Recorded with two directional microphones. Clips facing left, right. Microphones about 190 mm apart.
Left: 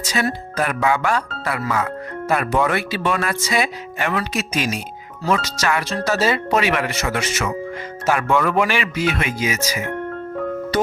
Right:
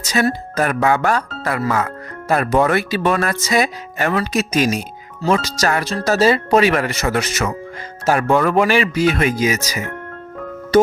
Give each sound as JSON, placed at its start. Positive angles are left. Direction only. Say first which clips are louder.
{"t": 0.0, "sound": "speech", "louder": "right 4 dB", "side_deg": -45}